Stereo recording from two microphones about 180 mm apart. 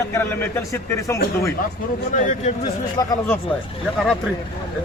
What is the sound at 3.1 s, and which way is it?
Speech, 15° left (ahead or behind).